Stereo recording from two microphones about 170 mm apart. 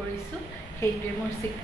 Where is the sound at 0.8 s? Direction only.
15° left (ahead or behind).